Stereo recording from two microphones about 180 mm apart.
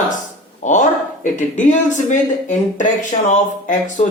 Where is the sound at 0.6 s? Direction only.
45° left (ahead or behind).